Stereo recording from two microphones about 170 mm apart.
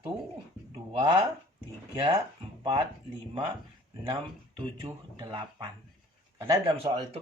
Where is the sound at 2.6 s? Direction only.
20° right (ahead or behind).